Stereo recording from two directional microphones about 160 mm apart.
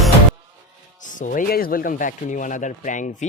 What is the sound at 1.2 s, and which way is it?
Speech, 60° left (ahead or behind).